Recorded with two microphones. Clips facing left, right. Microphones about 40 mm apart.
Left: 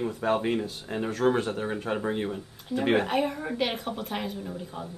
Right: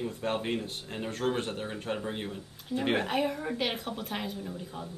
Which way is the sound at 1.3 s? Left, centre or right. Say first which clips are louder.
Left 5 dB; left.